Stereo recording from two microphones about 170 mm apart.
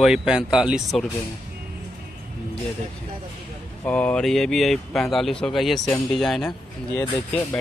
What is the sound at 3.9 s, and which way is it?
Speech, 5° left (ahead or behind).